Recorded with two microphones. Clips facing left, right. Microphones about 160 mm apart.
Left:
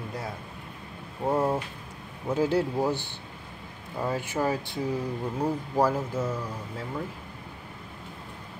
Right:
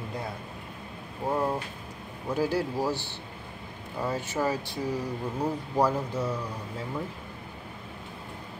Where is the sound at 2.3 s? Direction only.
20° left (ahead or behind).